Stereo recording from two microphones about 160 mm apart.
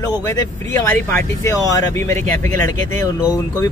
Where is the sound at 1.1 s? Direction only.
20° left (ahead or behind).